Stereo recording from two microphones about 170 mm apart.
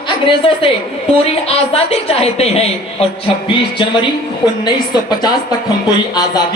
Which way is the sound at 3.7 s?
25° left (ahead or behind).